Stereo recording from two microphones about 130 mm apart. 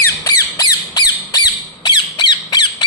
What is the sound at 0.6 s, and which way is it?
Squawk, 30° left (ahead or behind).